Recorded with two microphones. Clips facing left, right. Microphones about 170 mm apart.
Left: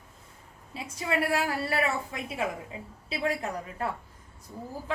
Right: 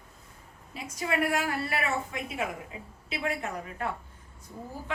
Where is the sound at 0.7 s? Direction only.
30° left (ahead or behind).